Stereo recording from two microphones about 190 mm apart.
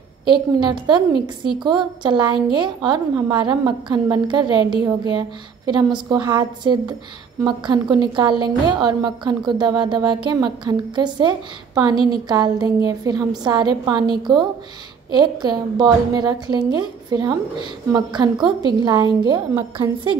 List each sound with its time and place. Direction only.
0.3 s a woman's voice: 25° right (ahead or behind)